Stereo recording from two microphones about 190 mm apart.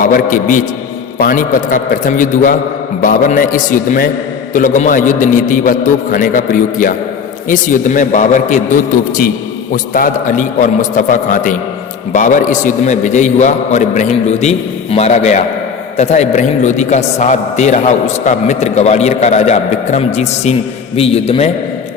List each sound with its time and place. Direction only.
0.0 s a man's voice: 45° left (ahead or behind)
9.7 s a man's voice: 45° left (ahead or behind)